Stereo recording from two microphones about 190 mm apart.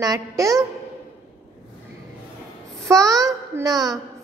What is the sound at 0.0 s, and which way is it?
Speech, 20° right (ahead or behind).